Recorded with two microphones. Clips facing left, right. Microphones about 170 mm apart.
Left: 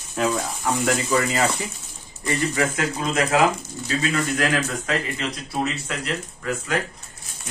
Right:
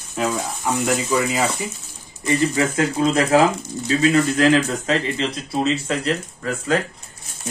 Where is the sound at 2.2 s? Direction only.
25° right (ahead or behind).